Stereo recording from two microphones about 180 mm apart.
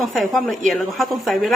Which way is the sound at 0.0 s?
Centre (ahead or behind).